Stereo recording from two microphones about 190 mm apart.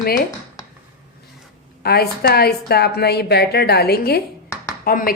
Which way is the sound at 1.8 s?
55° left (ahead or behind).